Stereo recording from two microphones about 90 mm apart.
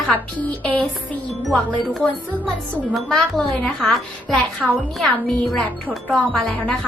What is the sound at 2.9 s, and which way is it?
A woman's voice, 5° left (ahead or behind).